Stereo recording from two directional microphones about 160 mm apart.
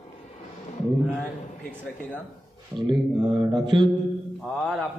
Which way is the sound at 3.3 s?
30° right (ahead or behind).